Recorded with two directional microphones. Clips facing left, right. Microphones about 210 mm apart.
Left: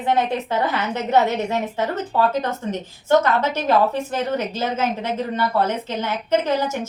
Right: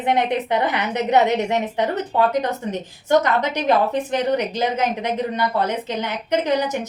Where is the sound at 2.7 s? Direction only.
15° right (ahead or behind).